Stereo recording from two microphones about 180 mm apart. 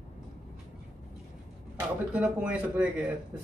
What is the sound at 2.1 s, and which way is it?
Speech, 5° right (ahead or behind).